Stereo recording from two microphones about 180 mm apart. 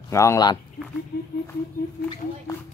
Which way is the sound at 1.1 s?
65° left (ahead or behind).